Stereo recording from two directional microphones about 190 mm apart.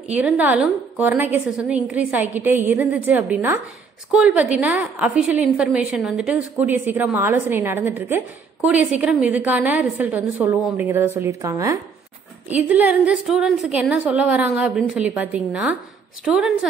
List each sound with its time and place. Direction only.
0.1 s a woman's voice: 5° right (ahead or behind)